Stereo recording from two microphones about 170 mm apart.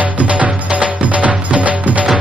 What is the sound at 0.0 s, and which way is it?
Music, 10° right (ahead or behind).